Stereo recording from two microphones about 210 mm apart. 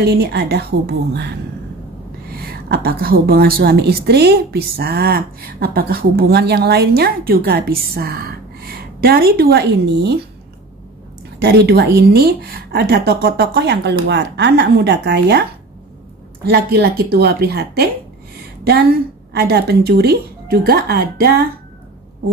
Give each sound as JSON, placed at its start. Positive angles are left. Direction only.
{"t": 0.0, "sound": "a woman's voice", "side_deg": -50}
{"t": 2.3, "sound": "a woman's voice", "side_deg": -45}
{"t": 11.3, "sound": "a woman's voice", "side_deg": -50}
{"t": 16.4, "sound": "a woman's voice", "side_deg": -50}